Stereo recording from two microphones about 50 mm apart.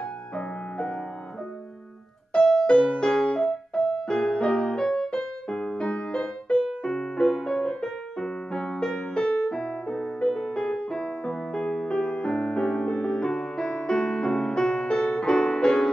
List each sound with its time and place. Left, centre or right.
0.4 s music: centre
2.4 s music: centre